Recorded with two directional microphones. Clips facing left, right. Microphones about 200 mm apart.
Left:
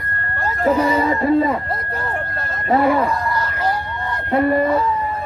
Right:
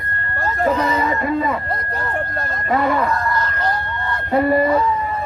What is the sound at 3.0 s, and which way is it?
Chicken, 10° left (ahead or behind).